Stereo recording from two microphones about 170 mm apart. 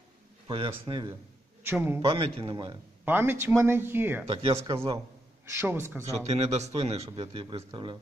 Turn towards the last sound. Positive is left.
turn(degrees=-30)  # may be behind; listen again after turning